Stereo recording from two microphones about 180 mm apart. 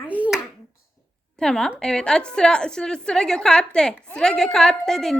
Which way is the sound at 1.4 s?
5° left (ahead or behind).